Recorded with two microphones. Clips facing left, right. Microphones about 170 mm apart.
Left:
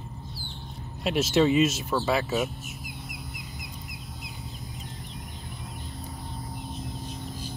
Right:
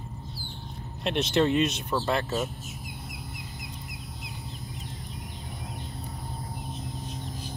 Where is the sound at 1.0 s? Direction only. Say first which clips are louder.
Left 2 dB; 5° left (ahead or behind).